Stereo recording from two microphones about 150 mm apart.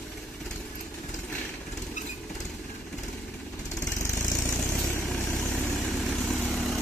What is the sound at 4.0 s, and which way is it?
Vehicle, 15° left (ahead or behind).